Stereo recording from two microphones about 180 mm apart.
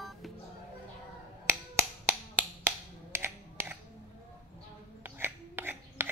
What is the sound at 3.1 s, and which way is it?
Finger snapping, 15° right (ahead or behind).